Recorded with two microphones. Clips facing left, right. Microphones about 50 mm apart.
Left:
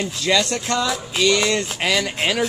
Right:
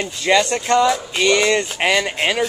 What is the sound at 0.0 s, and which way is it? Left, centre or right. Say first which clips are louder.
Speech: right 3 dB; right.